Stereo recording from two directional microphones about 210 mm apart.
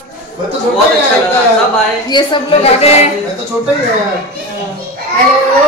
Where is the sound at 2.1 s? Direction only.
20° left (ahead or behind).